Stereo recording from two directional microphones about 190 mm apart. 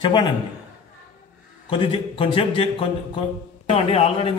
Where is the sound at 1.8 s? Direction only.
30° left (ahead or behind).